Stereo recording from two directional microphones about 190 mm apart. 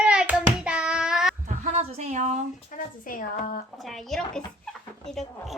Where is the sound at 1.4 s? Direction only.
35° right (ahead or behind).